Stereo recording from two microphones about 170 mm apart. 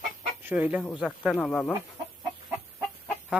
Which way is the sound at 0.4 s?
10° right (ahead or behind).